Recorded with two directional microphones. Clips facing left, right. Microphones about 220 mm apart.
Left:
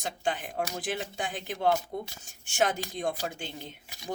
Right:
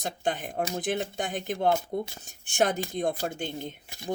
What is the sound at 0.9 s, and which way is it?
Speech, 55° right (ahead or behind).